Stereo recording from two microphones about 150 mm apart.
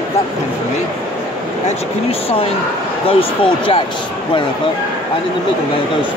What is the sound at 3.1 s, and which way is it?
Speech, 40° left (ahead or behind).